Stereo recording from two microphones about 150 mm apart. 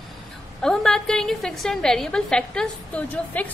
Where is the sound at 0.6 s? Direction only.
5° left (ahead or behind).